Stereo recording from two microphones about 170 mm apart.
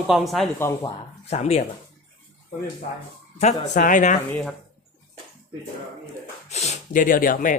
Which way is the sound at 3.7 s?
45° left (ahead or behind).